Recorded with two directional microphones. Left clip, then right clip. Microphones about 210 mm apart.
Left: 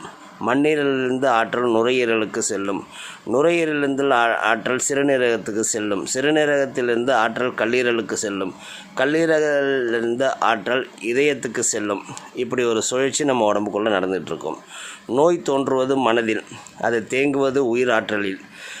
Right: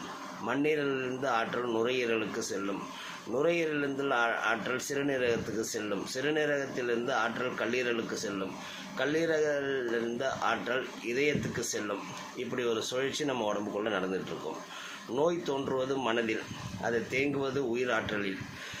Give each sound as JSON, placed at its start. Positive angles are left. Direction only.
{"t": 0.4, "sound": "speech", "side_deg": 50}